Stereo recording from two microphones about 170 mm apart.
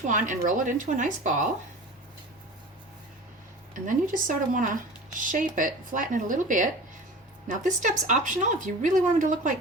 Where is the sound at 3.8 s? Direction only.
50° right (ahead or behind).